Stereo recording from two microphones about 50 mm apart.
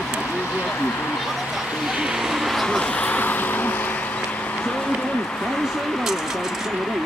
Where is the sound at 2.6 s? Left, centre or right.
Centre.